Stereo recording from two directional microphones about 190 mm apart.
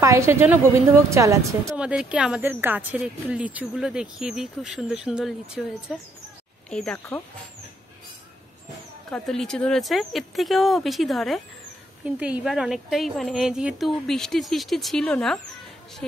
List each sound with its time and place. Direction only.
0.0 s a woman's voice: 15° right (ahead or behind)
1.8 s speech: 5° right (ahead or behind)
9.1 s speech: centre (ahead or behind)